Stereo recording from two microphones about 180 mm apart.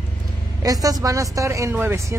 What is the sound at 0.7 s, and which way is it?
Speech, 20° right (ahead or behind).